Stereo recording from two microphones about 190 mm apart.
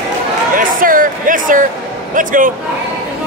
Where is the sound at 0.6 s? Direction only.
45° right (ahead or behind).